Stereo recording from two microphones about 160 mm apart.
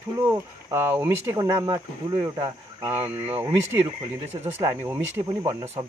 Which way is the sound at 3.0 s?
10° right (ahead or behind).